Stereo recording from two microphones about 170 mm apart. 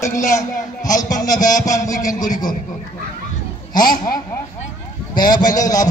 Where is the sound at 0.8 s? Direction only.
20° left (ahead or behind).